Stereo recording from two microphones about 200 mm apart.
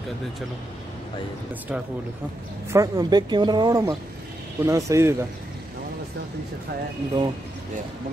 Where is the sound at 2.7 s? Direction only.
20° right (ahead or behind).